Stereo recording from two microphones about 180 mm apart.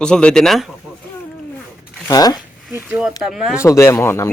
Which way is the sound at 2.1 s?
20° left (ahead or behind).